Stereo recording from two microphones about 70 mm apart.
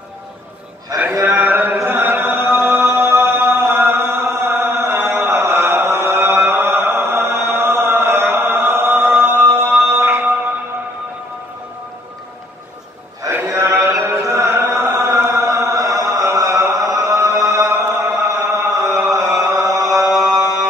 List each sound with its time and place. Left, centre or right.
0.9 s a man's voice: right
1.2 s a sound: right
1.8 s chant: right
13.3 s a sound: right
13.8 s mantra: right
17.8 s chant: right